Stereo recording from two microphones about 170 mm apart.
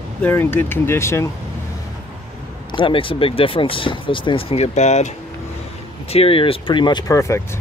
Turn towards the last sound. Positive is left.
turn(degrees=15)  # may be behind; listen again after turning